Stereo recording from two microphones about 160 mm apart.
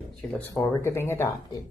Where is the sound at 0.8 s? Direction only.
15° left (ahead or behind).